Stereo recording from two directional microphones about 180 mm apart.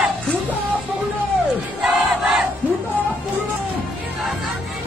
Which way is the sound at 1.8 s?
Centre (ahead or behind).